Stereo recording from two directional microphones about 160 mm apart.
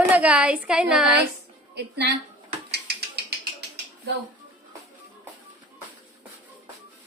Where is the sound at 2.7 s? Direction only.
90° right.